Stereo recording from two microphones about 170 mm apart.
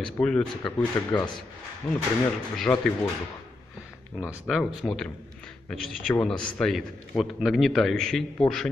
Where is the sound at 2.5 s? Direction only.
5° left (ahead or behind).